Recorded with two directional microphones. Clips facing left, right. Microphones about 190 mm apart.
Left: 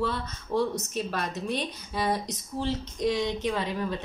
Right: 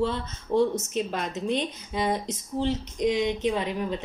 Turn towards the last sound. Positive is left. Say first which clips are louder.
# right 2 dB
turn(degrees=-15)  # may be behind; listen again after turning